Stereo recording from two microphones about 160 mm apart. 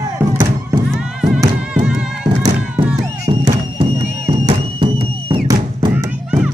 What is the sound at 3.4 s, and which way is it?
Music, 35° right (ahead or behind).